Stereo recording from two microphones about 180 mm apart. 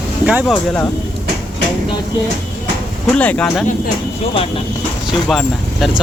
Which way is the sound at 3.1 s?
5° left (ahead or behind).